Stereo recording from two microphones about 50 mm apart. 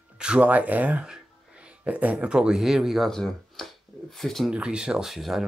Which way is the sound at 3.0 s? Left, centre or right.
Centre.